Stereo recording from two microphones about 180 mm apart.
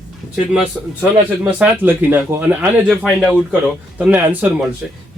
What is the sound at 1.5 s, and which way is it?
A man's voice, 5° right (ahead or behind).